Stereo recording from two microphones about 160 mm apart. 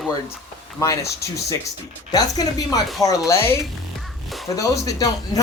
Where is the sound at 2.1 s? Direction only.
25° left (ahead or behind).